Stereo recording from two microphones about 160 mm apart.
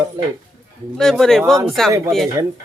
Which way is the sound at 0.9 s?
Centre (ahead or behind).